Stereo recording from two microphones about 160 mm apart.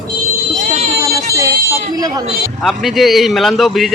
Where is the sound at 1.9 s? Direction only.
25° right (ahead or behind).